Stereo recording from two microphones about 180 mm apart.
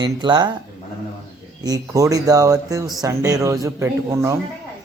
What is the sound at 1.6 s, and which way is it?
A man's voice, 20° right (ahead or behind).